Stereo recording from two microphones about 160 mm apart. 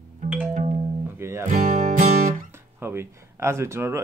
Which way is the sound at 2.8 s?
15° right (ahead or behind).